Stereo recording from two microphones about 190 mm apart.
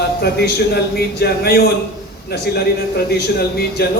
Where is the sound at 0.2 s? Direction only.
60° left (ahead or behind).